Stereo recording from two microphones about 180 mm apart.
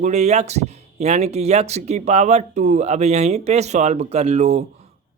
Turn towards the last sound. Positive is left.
turn(degrees=-40)  # may be behind; listen again after turning